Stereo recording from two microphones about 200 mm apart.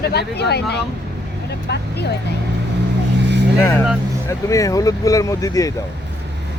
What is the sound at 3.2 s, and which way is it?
Vehicle, 60° right (ahead or behind).